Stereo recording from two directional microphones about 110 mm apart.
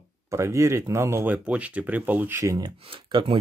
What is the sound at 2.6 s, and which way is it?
Speech, 45° right (ahead or behind).